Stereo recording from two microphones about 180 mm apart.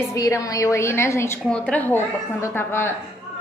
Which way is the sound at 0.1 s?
15° left (ahead or behind).